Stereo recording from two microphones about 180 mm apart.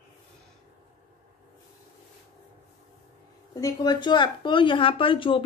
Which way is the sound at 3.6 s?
20° left (ahead or behind).